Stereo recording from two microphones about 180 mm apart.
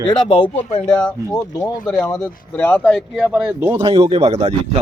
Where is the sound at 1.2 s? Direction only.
20° left (ahead or behind).